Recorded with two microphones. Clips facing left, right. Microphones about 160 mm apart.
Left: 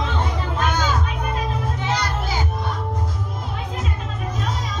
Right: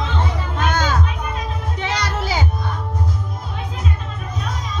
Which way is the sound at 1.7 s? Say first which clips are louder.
Right 1 dB; 80° right.